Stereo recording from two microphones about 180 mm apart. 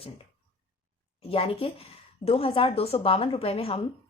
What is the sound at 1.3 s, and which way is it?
A woman's voice, 30° left (ahead or behind).